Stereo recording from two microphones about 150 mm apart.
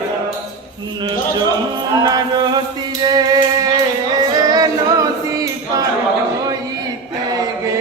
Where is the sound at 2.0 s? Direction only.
30° right (ahead or behind).